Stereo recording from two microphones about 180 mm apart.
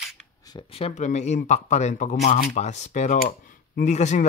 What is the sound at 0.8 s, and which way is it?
Speech, 35° left (ahead or behind).